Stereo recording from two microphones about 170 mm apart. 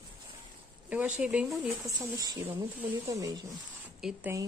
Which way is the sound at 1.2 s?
5° right (ahead or behind).